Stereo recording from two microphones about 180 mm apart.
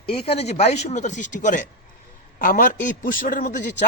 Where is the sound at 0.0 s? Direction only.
30° left (ahead or behind).